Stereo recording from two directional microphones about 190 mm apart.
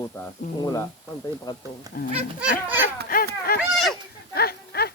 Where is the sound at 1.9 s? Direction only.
50° left (ahead or behind).